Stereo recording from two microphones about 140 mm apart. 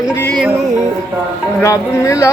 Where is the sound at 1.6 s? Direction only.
20° left (ahead or behind).